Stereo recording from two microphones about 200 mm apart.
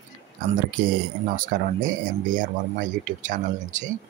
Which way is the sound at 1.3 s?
40° right (ahead or behind).